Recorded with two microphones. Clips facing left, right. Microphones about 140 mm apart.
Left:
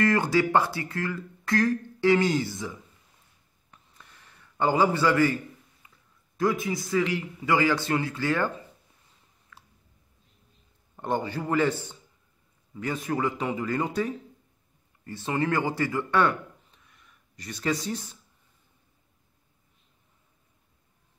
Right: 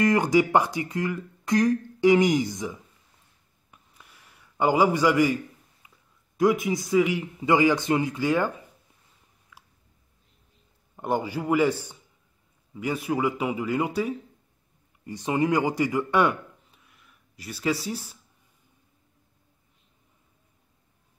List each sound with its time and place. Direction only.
0.0 s speech: 15° right (ahead or behind)
3.7 s a sound: 10° right (ahead or behind)
6.3 s speech: 15° right (ahead or behind)
9.5 s chewing: 10° right (ahead or behind)
11.0 s speech: 10° right (ahead or behind)